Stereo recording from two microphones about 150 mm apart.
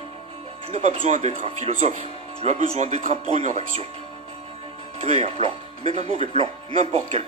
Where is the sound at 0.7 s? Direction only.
45° right (ahead or behind).